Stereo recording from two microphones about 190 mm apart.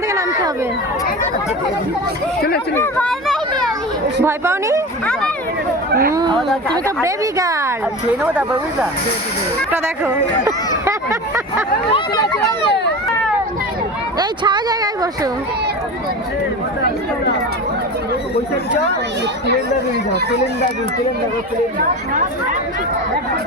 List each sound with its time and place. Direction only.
0.1 s a sound: 15° right (ahead or behind)
2.7 s speech: 15° left (ahead or behind)
4.2 s speech: 15° right (ahead or behind)
5.9 s chatter: 50° right (ahead or behind)
6.1 s chatter: 25° right (ahead or behind)
6.5 s speech: 5° left (ahead or behind)
7.0 s speech: 15° right (ahead or behind)
8.2 s speech: 5° right (ahead or behind)
10.8 s a sound: 15° right (ahead or behind)
11.9 s a sound: 25° left (ahead or behind)
14.2 s speech: 20° right (ahead or behind)
20.3 s speech: 60° left (ahead or behind)